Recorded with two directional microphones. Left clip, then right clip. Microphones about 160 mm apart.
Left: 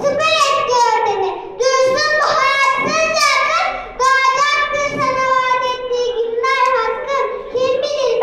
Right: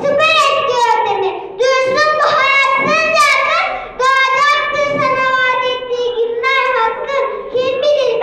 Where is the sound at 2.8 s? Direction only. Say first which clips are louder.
Right 3 dB; 25° right (ahead or behind).